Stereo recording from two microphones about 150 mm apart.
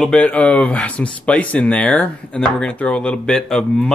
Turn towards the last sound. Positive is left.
turn(degrees=5)  # may be behind; listen again after turning